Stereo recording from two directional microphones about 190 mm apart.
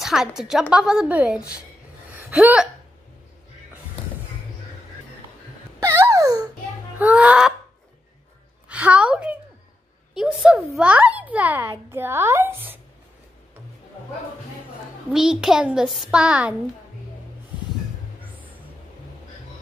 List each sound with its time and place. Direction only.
0.0 s a woman's voice: centre (ahead or behind)
2.1 s gasp: 5° right (ahead or behind)
5.8 s a sound: 15° right (ahead or behind)
7.0 s a woman's voice: 5° right (ahead or behind)
8.6 s a woman's voice: 5° right (ahead or behind)
15.1 s a woman's voice: 5° right (ahead or behind)